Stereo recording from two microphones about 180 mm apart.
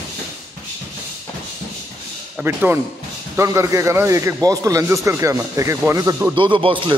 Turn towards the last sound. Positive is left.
turn(degrees=-30)  # may be behind; listen again after turning